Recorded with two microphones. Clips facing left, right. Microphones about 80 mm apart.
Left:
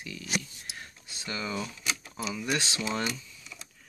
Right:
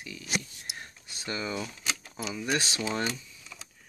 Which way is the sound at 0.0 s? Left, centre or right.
Right.